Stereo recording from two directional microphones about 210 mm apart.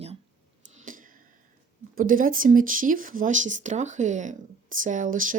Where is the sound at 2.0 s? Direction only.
40° right (ahead or behind).